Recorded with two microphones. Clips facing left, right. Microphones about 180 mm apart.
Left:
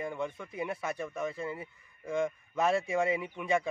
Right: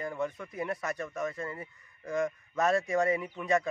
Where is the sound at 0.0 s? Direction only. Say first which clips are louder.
Right 1 dB; centre (ahead or behind).